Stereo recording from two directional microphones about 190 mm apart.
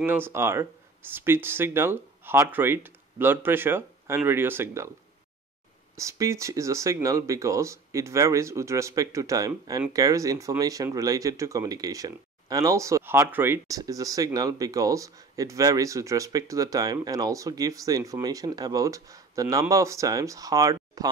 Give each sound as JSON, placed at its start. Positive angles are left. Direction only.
{"t": 0.0, "sound": "speech", "side_deg": -10}
{"t": 5.9, "sound": "speech", "side_deg": -15}